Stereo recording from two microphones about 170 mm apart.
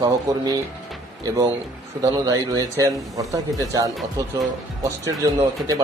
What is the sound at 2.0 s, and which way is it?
Speech, 20° right (ahead or behind).